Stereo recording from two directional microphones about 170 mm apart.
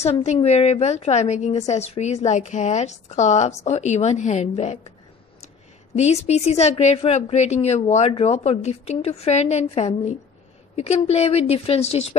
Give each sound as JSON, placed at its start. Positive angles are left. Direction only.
{"t": 0.0, "sound": "a woman's voice", "side_deg": 40}
{"t": 5.9, "sound": "a woman's voice", "side_deg": 40}